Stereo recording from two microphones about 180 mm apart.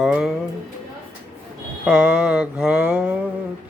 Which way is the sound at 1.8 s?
5° right (ahead or behind).